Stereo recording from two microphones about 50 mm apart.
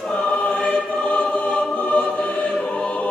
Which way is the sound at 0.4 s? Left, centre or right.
Left.